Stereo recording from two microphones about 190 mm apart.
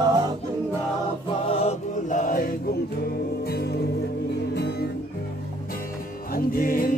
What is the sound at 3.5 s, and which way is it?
Music, 55° left (ahead or behind).